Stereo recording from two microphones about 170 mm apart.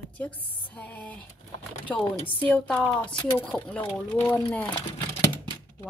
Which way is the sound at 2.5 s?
5° left (ahead or behind).